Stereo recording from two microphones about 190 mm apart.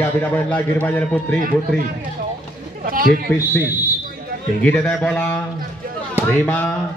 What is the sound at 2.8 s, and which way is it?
Speech, 50° right (ahead or behind).